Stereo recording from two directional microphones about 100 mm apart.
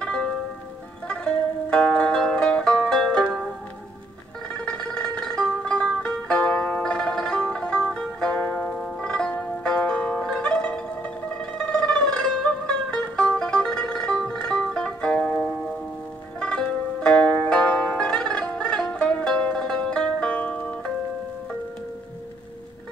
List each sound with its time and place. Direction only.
0.0 s music: 10° left (ahead or behind)
4.6 s music: 10° left (ahead or behind)
16.3 s zither: 10° left (ahead or behind)